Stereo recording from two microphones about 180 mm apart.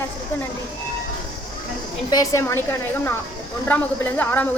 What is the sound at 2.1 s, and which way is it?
Speech, 15° left (ahead or behind).